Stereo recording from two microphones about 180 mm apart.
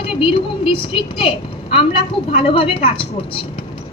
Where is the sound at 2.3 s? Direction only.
30° left (ahead or behind).